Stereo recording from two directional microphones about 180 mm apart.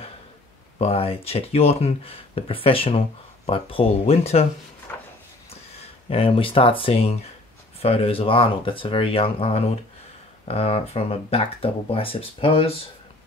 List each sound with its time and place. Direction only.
0.7 s speech: 35° left (ahead or behind)
4.9 s a sound: 10° left (ahead or behind)
5.5 s speech: 35° left (ahead or behind)